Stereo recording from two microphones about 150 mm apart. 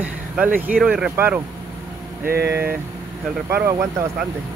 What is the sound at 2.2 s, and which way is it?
Speech, 90° right.